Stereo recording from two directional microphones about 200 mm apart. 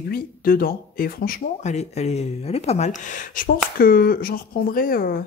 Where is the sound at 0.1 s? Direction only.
45° left (ahead or behind).